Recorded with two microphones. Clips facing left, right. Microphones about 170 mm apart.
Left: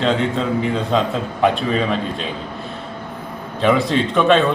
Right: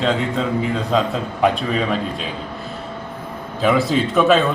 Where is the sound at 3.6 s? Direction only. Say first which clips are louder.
Left 1 dB; centre (ahead or behind).